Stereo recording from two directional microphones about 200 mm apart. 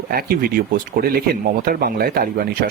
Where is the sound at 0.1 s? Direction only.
50° right (ahead or behind).